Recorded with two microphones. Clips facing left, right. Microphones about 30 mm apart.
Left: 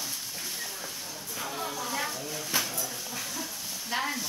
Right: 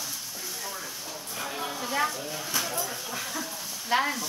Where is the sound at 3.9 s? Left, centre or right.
Centre.